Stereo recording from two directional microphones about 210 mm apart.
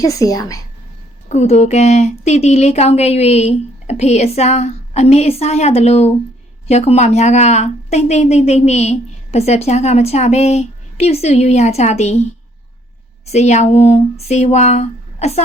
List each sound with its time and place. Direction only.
0.0 s a woman's voice: 15° left (ahead or behind)
1.3 s a woman's voice: 35° left (ahead or behind)
13.2 s a woman's voice: 30° left (ahead or behind)